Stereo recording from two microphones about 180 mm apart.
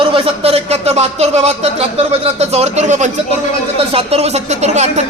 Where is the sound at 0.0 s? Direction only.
30° right (ahead or behind).